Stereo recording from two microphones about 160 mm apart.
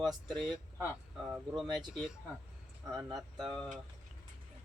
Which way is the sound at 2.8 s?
20° right (ahead or behind).